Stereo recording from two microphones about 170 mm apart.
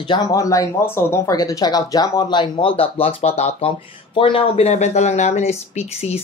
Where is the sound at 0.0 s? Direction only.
25° left (ahead or behind).